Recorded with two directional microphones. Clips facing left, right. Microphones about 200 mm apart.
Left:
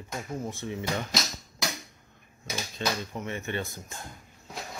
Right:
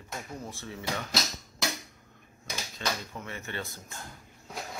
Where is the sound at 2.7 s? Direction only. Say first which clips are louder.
Left 4 dB; 20° left (ahead or behind).